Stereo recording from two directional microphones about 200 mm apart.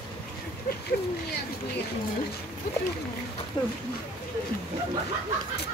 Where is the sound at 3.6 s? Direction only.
20° left (ahead or behind).